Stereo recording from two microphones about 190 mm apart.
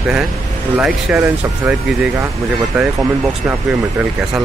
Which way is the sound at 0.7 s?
5° right (ahead or behind).